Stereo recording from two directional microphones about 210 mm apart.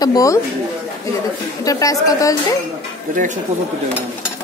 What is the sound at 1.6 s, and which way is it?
Speech, 15° left (ahead or behind).